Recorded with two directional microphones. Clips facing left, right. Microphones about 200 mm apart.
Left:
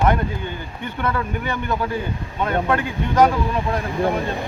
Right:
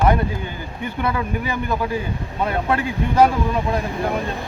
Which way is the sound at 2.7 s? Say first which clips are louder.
Even; 30° right (ahead or behind).